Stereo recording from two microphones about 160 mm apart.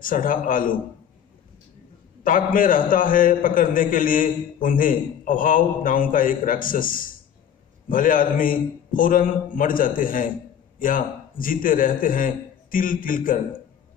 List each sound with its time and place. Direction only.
0.0 s a man's voice: 60° left (ahead or behind)
2.2 s a man's voice: 60° left (ahead or behind)